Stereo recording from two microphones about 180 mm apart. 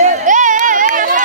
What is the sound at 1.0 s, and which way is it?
Run, 45° right (ahead or behind).